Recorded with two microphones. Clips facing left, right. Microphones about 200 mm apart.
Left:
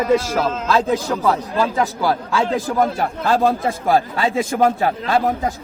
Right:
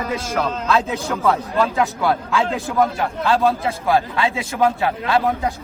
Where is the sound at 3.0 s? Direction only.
45° left (ahead or behind).